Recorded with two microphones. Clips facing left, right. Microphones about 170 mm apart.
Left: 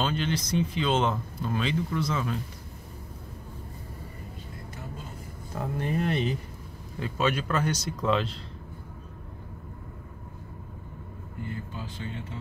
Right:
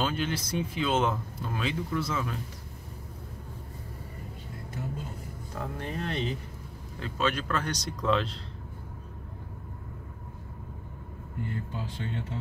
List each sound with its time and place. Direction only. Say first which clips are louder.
0.0 s speech: left 1 dB; 5° right (ahead or behind)
5.5 s speech: left 6 dB; 10° left (ahead or behind)